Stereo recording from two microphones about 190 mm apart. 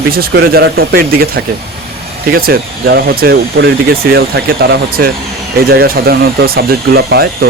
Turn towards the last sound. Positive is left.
turn(degrees=-55)  # may be behind; listen again after turning